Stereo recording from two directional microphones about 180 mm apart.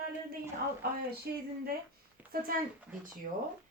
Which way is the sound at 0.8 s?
55° right (ahead or behind).